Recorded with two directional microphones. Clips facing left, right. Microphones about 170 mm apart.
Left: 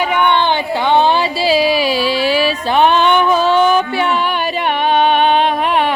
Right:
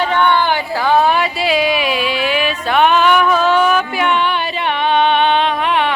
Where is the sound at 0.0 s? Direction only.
15° left (ahead or behind).